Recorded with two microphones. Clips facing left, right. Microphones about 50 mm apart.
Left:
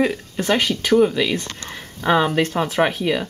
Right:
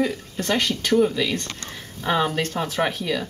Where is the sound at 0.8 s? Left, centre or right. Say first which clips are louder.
Left 3 dB; centre.